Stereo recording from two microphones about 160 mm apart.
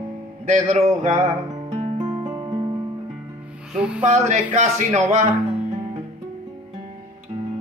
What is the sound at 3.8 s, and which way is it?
Speech, 5° right (ahead or behind).